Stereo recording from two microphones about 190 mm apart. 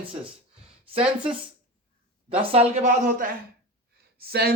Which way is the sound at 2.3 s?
30° right (ahead or behind).